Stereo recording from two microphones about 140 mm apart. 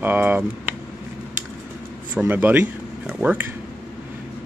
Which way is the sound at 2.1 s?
10° right (ahead or behind).